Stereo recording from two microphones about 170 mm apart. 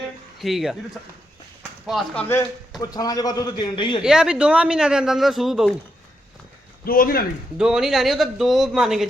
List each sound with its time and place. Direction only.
0.3 s a man's voice: centre (ahead or behind)
1.9 s speech: centre (ahead or behind)
2.2 s a man's voice: 15° left (ahead or behind)
4.0 s speech: 5° right (ahead or behind)
6.8 s a man's voice: 60° left (ahead or behind)
7.6 s speech: 5° right (ahead or behind)